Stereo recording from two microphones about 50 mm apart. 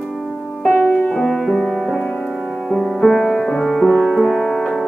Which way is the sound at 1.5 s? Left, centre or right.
Centre.